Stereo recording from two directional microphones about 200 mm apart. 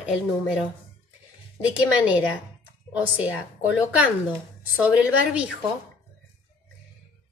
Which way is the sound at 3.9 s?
5° right (ahead or behind).